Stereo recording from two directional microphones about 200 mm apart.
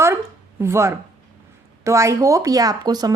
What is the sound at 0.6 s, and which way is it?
Speech, 15° right (ahead or behind).